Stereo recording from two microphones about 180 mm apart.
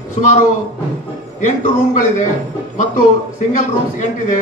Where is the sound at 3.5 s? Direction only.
45° left (ahead or behind).